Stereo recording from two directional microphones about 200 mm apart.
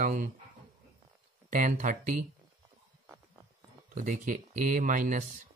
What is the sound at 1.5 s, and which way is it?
Speech, 40° right (ahead or behind).